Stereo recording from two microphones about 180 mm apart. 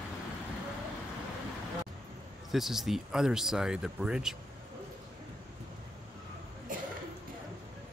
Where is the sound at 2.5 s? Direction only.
Centre (ahead or behind).